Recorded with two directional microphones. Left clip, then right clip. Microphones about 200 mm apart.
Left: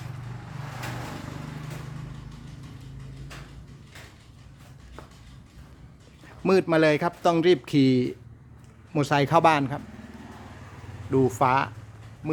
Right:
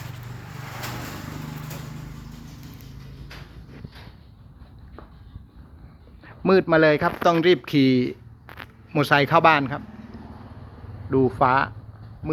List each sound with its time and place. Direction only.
6.2 s speech: 15° left (ahead or behind)
11.1 s speech: 15° left (ahead or behind)